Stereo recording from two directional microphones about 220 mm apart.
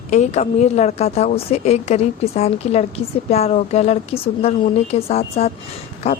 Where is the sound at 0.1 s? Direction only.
30° left (ahead or behind).